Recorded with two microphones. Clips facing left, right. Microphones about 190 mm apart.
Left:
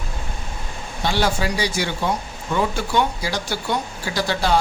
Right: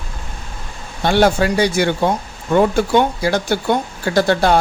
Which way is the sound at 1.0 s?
55° right (ahead or behind).